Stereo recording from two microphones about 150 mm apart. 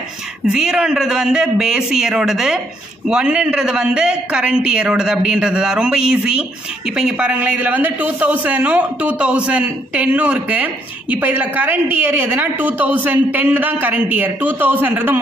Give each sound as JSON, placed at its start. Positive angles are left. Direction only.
{"t": 0.5, "sound": "a man's voice", "side_deg": -5}